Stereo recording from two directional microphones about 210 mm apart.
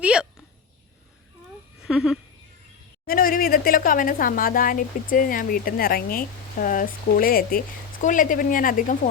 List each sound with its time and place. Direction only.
0.0 s a sound: 5° right (ahead or behind)
1.8 s speech: centre (ahead or behind)
3.1 s speech: 40° left (ahead or behind)